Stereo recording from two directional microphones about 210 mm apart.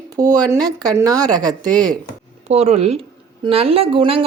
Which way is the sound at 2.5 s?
30° right (ahead or behind).